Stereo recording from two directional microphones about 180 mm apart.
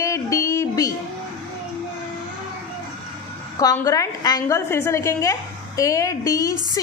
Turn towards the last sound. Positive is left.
turn(degrees=20)  # may be behind; listen again after turning